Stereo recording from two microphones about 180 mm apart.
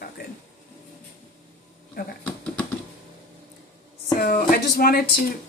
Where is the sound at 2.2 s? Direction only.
5° left (ahead or behind).